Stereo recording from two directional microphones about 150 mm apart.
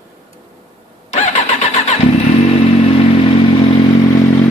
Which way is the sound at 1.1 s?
50° left (ahead or behind).